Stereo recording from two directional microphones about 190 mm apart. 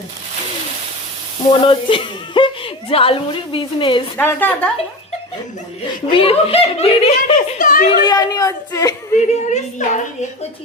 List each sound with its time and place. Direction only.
1.5 s a woman's voice: 30° left (ahead or behind)
4.2 s a woman's voice: 10° left (ahead or behind)
6.1 s speech: 30° left (ahead or behind)
7.6 s speech: 45° left (ahead or behind)
8.0 s a woman's voice: 20° left (ahead or behind)
9.1 s speech: 40° left (ahead or behind)